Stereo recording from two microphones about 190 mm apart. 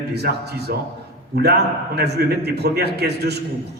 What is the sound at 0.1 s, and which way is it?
A man's voice, 60° right (ahead or behind).